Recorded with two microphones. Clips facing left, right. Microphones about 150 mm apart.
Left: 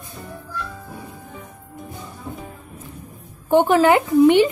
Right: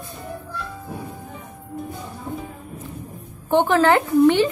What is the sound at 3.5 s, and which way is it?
Speech, 15° left (ahead or behind).